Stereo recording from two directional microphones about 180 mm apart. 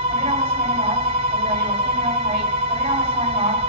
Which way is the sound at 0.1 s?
35° right (ahead or behind).